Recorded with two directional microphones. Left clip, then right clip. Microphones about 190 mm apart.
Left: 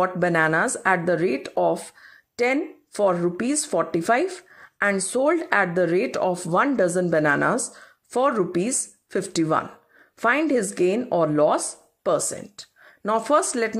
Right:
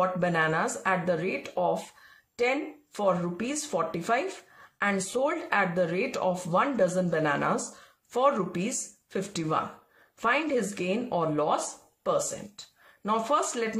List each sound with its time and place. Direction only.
0.0 s speech: 40° left (ahead or behind)